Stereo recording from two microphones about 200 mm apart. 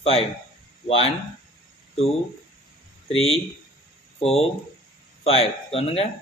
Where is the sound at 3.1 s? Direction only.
30° left (ahead or behind).